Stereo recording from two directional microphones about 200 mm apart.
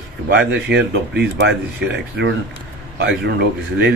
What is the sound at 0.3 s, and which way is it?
Speech, 60° right (ahead or behind).